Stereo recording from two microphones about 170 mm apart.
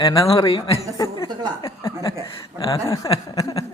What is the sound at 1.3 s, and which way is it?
Speech, 25° right (ahead or behind).